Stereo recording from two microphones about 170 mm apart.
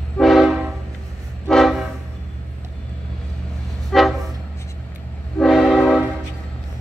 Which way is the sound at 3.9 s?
Centre (ahead or behind).